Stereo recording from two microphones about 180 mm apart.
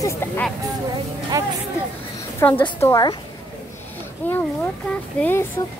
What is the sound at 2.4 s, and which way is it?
Speech, 10° left (ahead or behind).